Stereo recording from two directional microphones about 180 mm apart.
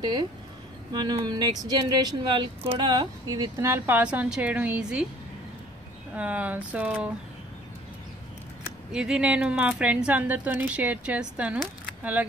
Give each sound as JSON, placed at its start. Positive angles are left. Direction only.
{"t": 0.9, "sound": "speech", "side_deg": -25}
{"t": 6.1, "sound": "a woman's voice", "side_deg": -10}
{"t": 8.9, "sound": "a woman's voice", "side_deg": -5}